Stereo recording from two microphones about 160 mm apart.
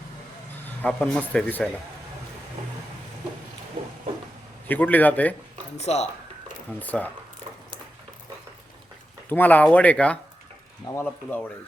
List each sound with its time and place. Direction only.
0.8 s speech: 5° left (ahead or behind)
4.7 s speech: 10° left (ahead or behind)
5.7 s speech: 45° left (ahead or behind)
6.7 s speech: 10° left (ahead or behind)
9.3 s speech: 10° left (ahead or behind)